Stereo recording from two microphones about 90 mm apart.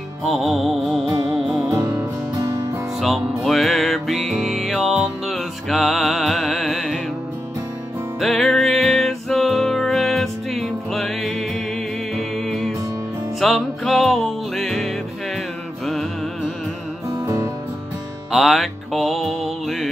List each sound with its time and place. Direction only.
0.2 s music: 5° right (ahead or behind)
1.7 s music: 35° right (ahead or behind)
3.0 s music: centre (ahead or behind)
8.2 s music: centre (ahead or behind)
18.3 s music: centre (ahead or behind)